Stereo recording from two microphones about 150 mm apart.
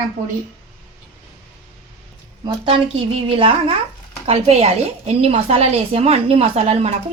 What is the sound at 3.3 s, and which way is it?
A woman's voice, 35° right (ahead or behind).